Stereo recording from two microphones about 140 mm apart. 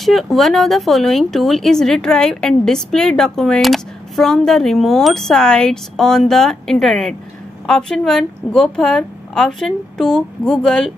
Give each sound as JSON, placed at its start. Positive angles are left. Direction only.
{"t": 0.0, "sound": "speech", "side_deg": 0}